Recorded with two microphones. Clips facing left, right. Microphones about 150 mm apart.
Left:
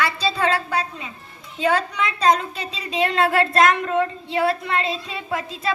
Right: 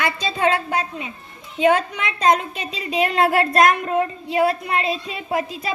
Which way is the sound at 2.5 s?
35° left (ahead or behind).